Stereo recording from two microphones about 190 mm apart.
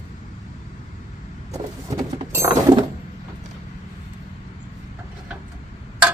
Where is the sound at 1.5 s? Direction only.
20° right (ahead or behind).